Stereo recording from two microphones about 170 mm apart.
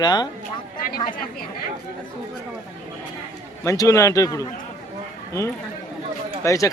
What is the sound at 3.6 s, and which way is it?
Speech, 20° left (ahead or behind).